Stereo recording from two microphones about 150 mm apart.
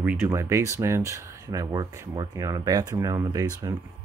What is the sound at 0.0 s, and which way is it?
Speech, 15° right (ahead or behind).